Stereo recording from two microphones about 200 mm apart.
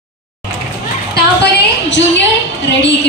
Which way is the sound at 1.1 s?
60° left (ahead or behind).